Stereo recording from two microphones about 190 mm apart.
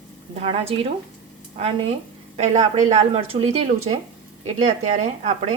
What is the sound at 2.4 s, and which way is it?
A woman's voice, 40° right (ahead or behind).